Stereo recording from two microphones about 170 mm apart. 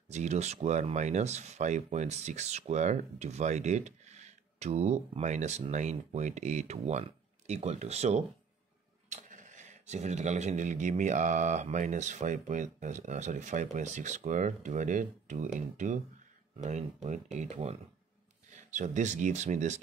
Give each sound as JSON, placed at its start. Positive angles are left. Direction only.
{"t": 0.1, "sound": "speech", "side_deg": -45}